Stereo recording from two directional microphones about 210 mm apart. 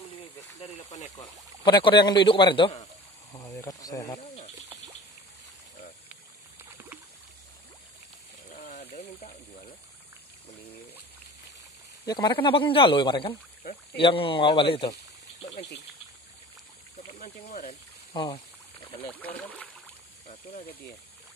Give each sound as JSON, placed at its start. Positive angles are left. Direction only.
{"t": 0.4, "sound": "a sound", "side_deg": 30}
{"t": 1.1, "sound": "a man's voice", "side_deg": 20}
{"t": 3.3, "sound": "snake", "side_deg": 15}
{"t": 8.5, "sound": "a sound", "side_deg": 35}
{"t": 12.1, "sound": "a man's voice", "side_deg": 20}
{"t": 15.4, "sound": "insect", "side_deg": 30}
{"t": 17.2, "sound": "snake", "side_deg": 35}
{"t": 18.1, "sound": "speech", "side_deg": 20}
{"t": 19.0, "sound": "speech", "side_deg": 10}